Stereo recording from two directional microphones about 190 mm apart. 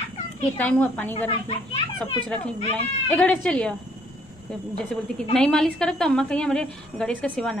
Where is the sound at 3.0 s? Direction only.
5° left (ahead or behind).